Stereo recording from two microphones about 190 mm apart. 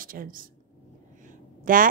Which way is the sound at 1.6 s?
45° right (ahead or behind).